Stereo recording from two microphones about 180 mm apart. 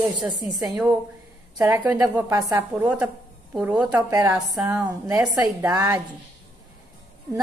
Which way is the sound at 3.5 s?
5° right (ahead or behind).